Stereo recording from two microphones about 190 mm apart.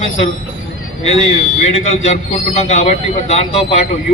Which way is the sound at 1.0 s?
35° left (ahead or behind).